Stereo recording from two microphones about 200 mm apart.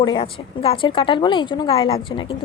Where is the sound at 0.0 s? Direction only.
25° left (ahead or behind).